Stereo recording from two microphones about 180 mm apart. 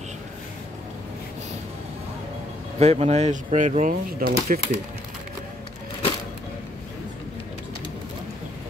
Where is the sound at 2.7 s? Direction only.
35° right (ahead or behind).